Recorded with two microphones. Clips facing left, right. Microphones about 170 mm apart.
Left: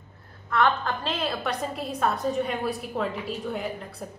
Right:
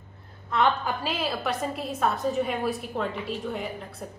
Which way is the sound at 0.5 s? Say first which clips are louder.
Even; 20° right (ahead or behind).